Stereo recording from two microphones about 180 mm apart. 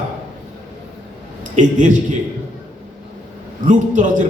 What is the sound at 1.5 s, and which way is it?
Speech, 45° right (ahead or behind).